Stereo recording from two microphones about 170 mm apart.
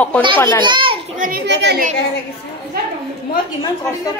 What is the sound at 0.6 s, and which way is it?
Speech, 30° right (ahead or behind).